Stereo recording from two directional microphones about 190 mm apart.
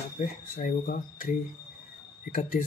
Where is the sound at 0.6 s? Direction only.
45° left (ahead or behind).